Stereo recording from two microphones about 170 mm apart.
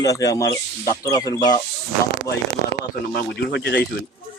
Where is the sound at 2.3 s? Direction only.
75° left (ahead or behind).